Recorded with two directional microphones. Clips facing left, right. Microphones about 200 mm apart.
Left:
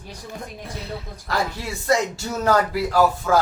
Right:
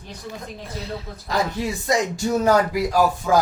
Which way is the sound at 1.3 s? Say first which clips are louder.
Right 3 dB; 20° right (ahead or behind).